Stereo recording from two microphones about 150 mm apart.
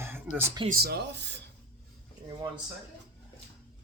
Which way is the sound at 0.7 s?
90° right.